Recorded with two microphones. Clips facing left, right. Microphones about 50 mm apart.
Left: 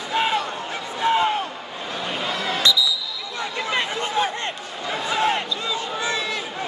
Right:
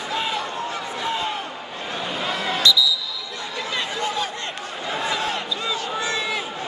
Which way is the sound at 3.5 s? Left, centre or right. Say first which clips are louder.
Left 2 dB; left.